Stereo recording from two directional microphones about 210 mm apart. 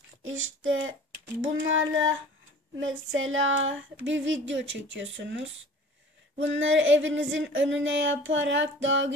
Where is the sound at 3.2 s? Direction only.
70° right (ahead or behind).